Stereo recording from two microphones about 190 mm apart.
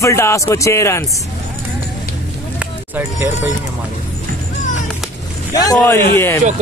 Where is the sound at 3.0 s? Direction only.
10° right (ahead or behind).